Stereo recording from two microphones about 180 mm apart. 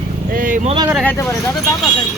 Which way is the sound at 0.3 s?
50° right (ahead or behind).